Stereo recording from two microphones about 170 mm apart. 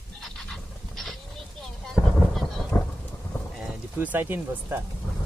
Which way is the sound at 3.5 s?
5° right (ahead or behind).